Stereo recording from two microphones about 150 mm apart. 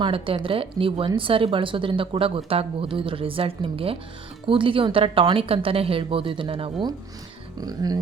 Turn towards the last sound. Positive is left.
turn(degrees=-25)  # may be behind; listen again after turning